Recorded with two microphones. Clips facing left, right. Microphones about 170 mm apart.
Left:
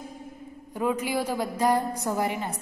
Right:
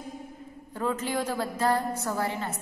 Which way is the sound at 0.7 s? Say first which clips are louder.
Left 2 dB; 10° left (ahead or behind).